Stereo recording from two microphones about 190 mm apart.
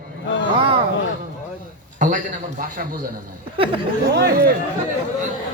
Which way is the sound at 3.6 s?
30° right (ahead or behind).